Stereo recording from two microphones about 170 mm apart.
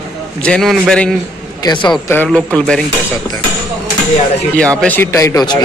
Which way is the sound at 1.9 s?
5° left (ahead or behind).